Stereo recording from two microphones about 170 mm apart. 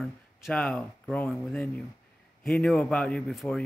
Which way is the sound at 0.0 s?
5° left (ahead or behind).